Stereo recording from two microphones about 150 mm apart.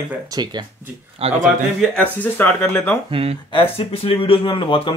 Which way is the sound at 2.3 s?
15° left (ahead or behind).